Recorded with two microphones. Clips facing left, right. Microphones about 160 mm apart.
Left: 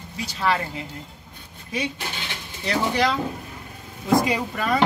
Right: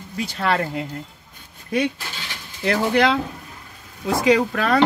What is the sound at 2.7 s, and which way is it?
Speech, 60° right (ahead or behind).